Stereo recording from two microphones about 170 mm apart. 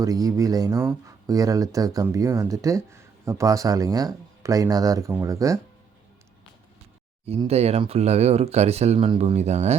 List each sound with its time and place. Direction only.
0.0 s speech: 20° right (ahead or behind)
7.4 s speech: 40° right (ahead or behind)